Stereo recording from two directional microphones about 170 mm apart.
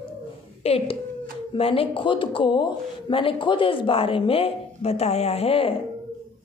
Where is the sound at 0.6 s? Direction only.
35° left (ahead or behind).